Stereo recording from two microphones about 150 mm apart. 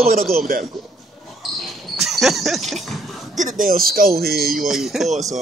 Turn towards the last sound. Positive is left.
turn(degrees=0)  # may be behind; listen again after turning